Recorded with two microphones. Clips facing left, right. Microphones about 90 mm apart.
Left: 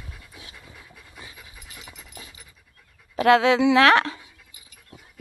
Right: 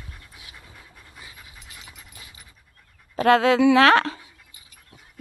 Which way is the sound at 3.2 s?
40° right (ahead or behind).